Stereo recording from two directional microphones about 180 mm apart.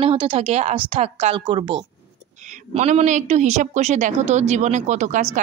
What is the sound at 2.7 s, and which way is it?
Speech, 40° right (ahead or behind).